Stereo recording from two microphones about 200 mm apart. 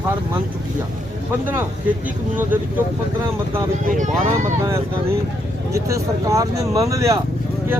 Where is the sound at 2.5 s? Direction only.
10° right (ahead or behind).